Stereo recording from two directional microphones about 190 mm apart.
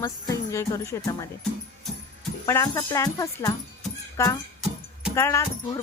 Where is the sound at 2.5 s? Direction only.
15° left (ahead or behind).